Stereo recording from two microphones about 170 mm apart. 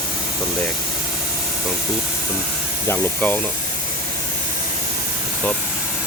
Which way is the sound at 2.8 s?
10° left (ahead or behind).